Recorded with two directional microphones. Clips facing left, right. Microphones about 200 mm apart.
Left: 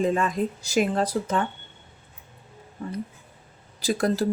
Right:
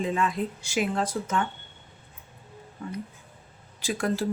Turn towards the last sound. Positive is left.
turn(degrees=40)  # may be behind; listen again after turning